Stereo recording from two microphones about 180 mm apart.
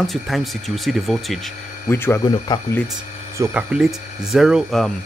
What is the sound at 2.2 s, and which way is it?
Speech, 25° left (ahead or behind).